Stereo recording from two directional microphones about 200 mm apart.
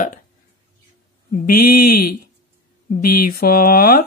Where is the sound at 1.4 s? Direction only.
45° left (ahead or behind).